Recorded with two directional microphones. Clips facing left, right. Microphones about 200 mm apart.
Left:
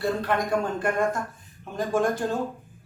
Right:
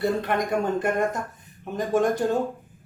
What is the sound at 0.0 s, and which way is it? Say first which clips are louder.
Speech: right 1 dB; 20° right (ahead or behind).